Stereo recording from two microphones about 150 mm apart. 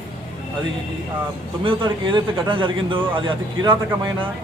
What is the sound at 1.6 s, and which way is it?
A man's voice, 30° right (ahead or behind).